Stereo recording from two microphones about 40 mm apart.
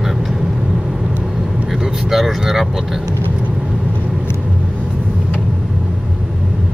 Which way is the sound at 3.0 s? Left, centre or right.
Left.